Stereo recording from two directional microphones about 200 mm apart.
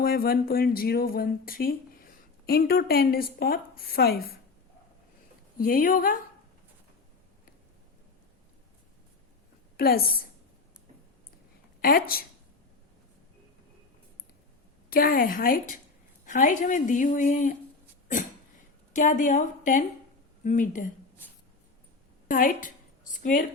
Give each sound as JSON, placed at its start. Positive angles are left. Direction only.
{"t": 0.0, "sound": "a woman's voice", "side_deg": 50}
{"t": 5.5, "sound": "a woman's voice", "side_deg": 45}
{"t": 9.7, "sound": "a woman's voice", "side_deg": 50}
{"t": 11.8, "sound": "a woman's voice", "side_deg": 45}
{"t": 14.8, "sound": "a woman's voice", "side_deg": 45}
{"t": 18.9, "sound": "speech", "side_deg": 40}
{"t": 22.3, "sound": "a woman's voice", "side_deg": 40}